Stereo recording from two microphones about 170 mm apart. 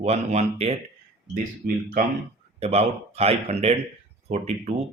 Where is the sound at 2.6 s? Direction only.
35° right (ahead or behind).